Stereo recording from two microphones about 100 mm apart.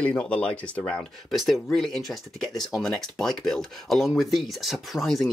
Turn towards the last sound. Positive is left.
turn(degrees=0)  # may be behind; listen again after turning